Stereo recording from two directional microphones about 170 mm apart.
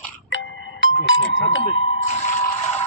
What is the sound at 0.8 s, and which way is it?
Speech, 90° left.